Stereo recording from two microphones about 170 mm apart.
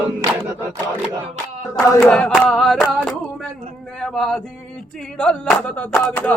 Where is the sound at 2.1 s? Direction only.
Centre (ahead or behind).